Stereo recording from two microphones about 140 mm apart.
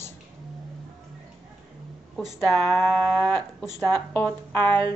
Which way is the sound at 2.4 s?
Centre (ahead or behind).